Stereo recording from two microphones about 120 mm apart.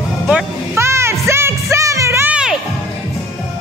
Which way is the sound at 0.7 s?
20° right (ahead or behind).